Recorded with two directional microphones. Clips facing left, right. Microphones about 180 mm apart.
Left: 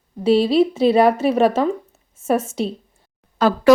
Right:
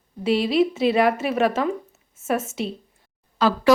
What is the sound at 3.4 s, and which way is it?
Speech, 50° left (ahead or behind).